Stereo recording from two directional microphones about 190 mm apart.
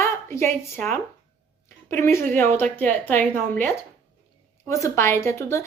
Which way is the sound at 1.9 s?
15° left (ahead or behind).